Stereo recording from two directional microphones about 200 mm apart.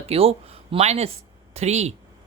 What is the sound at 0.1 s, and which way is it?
Speech, 30° right (ahead or behind).